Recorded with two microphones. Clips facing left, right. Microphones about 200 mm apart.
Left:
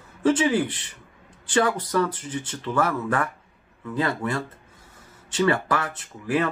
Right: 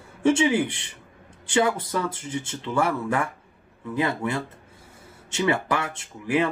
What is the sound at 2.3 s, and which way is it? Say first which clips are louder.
Speech: even; 25° right (ahead or behind).